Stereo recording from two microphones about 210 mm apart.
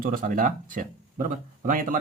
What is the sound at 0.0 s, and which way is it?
Speech, 40° right (ahead or behind).